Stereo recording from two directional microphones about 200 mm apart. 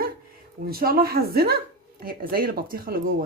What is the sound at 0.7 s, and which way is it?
Speech, 50° right (ahead or behind).